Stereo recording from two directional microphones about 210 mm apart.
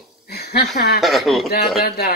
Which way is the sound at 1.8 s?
45° left (ahead or behind).